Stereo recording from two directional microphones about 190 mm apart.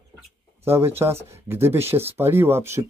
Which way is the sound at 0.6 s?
10° right (ahead or behind).